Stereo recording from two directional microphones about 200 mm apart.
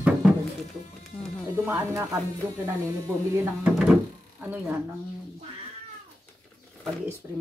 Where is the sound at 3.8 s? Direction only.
5° right (ahead or behind).